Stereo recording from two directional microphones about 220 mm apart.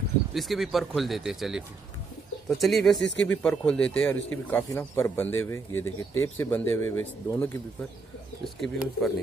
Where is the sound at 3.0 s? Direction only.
55° left (ahead or behind).